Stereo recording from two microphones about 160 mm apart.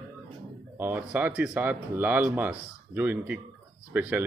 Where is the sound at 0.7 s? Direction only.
10° right (ahead or behind).